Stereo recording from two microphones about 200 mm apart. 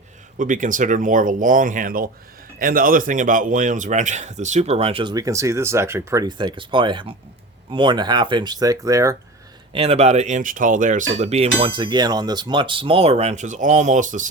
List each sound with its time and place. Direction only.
0.3 s speech: 40° right (ahead or behind); by 9.1 s 15° right (ahead or behind)
9.7 s speech: 30° right (ahead or behind)